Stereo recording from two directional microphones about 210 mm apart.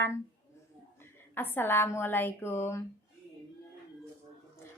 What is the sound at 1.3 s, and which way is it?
A woman's voice, 10° left (ahead or behind).